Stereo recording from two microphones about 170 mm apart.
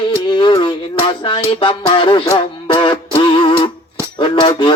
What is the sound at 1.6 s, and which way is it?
Music, 30° left (ahead or behind).